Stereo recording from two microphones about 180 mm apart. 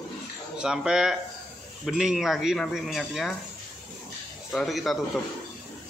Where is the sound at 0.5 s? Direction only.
5° right (ahead or behind).